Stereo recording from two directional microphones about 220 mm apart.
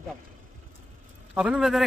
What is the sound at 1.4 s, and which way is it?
Speech, 5° right (ahead or behind).